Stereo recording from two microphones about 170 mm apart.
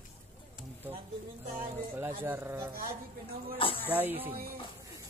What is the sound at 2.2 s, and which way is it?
Speech, 10° right (ahead or behind).